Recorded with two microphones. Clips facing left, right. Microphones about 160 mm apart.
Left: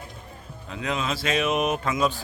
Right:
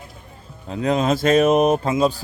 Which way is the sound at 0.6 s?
35° right (ahead or behind).